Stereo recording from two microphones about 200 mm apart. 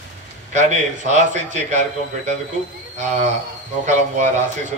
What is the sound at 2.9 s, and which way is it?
Speech, 35° right (ahead or behind).